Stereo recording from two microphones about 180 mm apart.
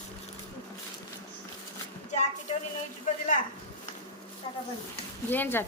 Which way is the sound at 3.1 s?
45° left (ahead or behind).